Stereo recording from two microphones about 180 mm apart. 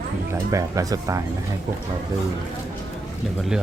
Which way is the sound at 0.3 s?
20° right (ahead or behind).